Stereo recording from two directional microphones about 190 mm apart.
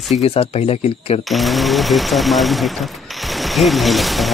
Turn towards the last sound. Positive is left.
turn(degrees=0)  # may be behind; listen again after turning